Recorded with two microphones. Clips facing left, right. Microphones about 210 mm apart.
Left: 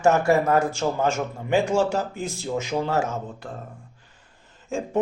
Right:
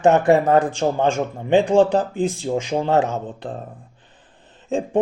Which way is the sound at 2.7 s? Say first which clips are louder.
Right 2 dB; 35° right (ahead or behind).